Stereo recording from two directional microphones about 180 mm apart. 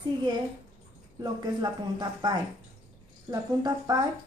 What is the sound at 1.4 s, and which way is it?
Speech, 25° right (ahead or behind).